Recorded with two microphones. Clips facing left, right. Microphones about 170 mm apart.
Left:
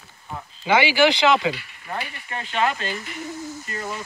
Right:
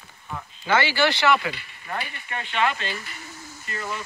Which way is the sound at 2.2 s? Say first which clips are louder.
Left 1 dB; 35° left (ahead or behind).